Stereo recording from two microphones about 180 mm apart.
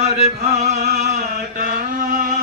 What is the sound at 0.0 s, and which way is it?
Chant, 40° right (ahead or behind).